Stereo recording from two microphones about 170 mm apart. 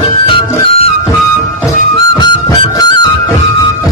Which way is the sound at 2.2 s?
25° left (ahead or behind).